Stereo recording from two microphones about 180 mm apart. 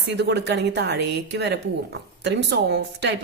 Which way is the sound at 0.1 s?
70° right (ahead or behind).